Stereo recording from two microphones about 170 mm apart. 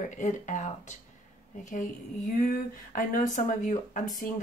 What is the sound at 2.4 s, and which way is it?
Speech, 55° left (ahead or behind).